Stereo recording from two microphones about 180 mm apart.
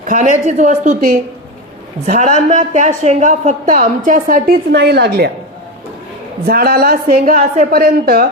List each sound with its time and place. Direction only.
0.0 s a woman's voice: 45° right (ahead or behind)
4.7 s a woman's voice: 70° right (ahead or behind)
6.4 s speech: 55° right (ahead or behind)
7.3 s speech: 35° right (ahead or behind)
7.7 s speech: 55° right (ahead or behind)